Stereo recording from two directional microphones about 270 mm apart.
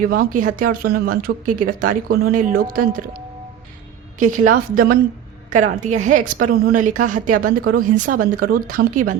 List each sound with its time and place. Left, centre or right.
0.0 s speech: right
4.2 s a woman's voice: right